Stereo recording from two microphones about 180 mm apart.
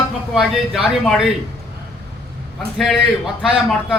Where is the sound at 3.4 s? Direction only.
Centre (ahead or behind).